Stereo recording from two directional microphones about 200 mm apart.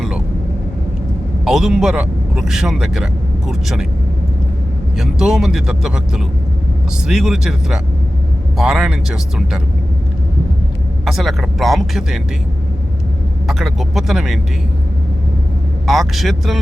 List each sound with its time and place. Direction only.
1.5 s speech: centre (ahead or behind)
4.9 s speech: centre (ahead or behind)
11.0 s speech: centre (ahead or behind)
13.5 s speech: centre (ahead or behind)
15.9 s speech: centre (ahead or behind)